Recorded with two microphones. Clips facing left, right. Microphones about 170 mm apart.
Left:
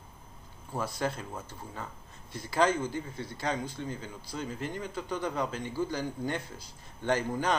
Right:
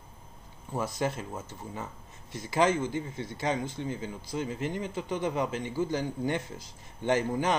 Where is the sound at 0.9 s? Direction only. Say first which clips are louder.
Right 2 dB; 20° right (ahead or behind).